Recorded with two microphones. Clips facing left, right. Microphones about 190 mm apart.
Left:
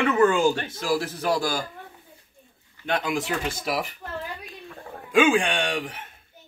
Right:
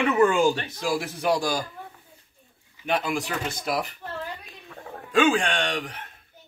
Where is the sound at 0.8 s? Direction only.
20° right (ahead or behind).